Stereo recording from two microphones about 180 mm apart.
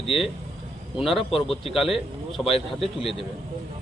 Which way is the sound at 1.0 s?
Centre (ahead or behind).